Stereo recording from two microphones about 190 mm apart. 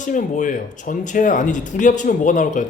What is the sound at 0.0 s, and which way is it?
Speech, 40° left (ahead or behind).